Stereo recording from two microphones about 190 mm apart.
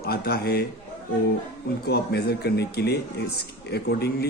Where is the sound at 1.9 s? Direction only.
60° left (ahead or behind).